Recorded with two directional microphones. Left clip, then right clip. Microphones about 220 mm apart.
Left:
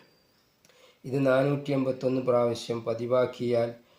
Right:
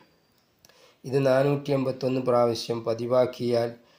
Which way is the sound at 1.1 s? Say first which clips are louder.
Right 2 dB; 35° right (ahead or behind).